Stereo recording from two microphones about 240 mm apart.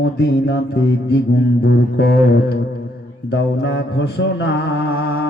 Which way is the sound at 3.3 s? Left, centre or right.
Left.